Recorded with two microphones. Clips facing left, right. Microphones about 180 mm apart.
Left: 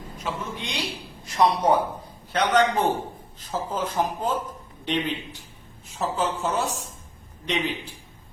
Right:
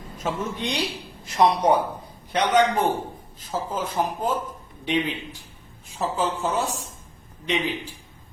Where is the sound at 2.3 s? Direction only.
10° right (ahead or behind).